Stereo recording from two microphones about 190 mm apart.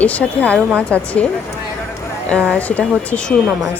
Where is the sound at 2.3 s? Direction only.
5° left (ahead or behind).